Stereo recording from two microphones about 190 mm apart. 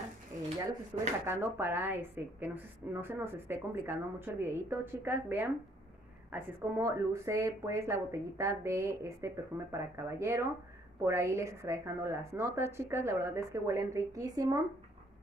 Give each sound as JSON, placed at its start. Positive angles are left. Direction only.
{"t": 1.2, "sound": "a woman's voice", "side_deg": -15}